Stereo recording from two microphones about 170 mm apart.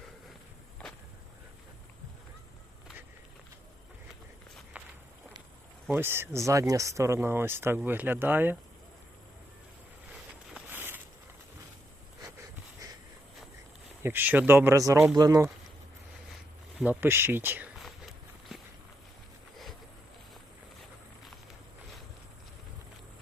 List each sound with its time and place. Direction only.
4.7 s walk: 10° right (ahead or behind)
5.9 s speech: 15° right (ahead or behind)
10.5 s a sound: 10° right (ahead or behind)
14.0 s speech: 10° right (ahead or behind)
16.7 s speech: 5° right (ahead or behind)